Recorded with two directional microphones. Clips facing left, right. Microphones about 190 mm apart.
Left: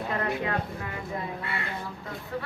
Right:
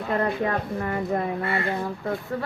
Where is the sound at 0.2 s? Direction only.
45° right (ahead or behind).